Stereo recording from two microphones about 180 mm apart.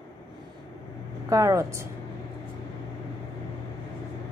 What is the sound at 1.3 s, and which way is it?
Speech, 15° right (ahead or behind).